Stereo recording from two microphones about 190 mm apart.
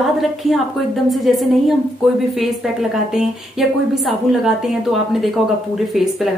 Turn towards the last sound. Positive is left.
turn(degrees=0)  # may be behind; listen again after turning